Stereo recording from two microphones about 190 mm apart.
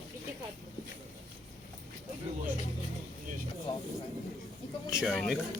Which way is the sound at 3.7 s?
25° left (ahead or behind).